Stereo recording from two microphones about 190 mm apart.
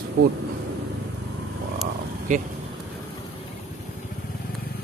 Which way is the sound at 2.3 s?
40° right (ahead or behind).